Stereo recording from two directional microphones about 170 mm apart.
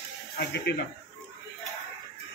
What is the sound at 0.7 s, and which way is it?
Speech, 75° left (ahead or behind).